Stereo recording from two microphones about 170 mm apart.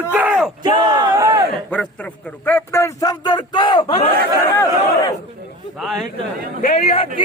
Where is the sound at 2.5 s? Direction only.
15° left (ahead or behind); by 4.1 s 35° left (ahead or behind).